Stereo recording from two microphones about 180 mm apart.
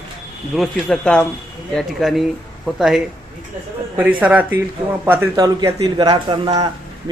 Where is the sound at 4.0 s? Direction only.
10° right (ahead or behind).